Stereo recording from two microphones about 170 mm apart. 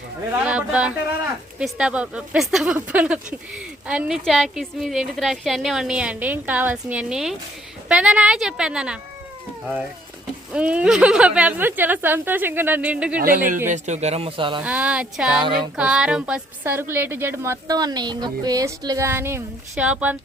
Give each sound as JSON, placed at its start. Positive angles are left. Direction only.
{"t": 0.3, "sound": "a woman's voice", "side_deg": -5}
{"t": 10.5, "sound": "speech", "side_deg": -5}
{"t": 13.7, "sound": "speech", "side_deg": -45}
{"t": 14.6, "sound": "speech", "side_deg": -10}